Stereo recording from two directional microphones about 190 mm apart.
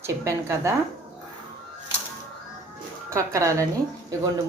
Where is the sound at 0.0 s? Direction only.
15° right (ahead or behind).